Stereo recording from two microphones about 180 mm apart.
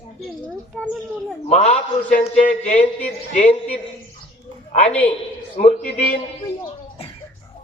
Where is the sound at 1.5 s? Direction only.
35° left (ahead or behind).